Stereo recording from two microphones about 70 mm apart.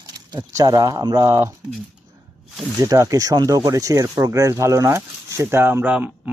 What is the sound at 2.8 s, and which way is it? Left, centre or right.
Speech, right.